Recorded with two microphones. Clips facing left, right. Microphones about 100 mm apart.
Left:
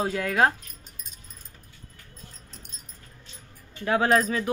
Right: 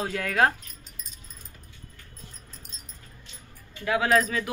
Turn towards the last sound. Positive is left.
turn(degrees=30)  # may be behind; listen again after turning